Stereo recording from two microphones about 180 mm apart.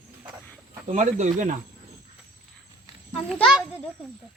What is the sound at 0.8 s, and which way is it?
Speech, 40° right (ahead or behind).